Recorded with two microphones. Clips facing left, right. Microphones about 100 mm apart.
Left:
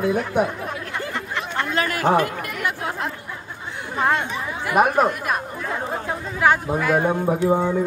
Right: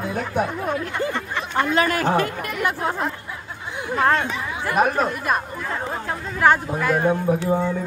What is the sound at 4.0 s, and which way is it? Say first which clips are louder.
Speech: right 1 dB; 5° left (ahead or behind).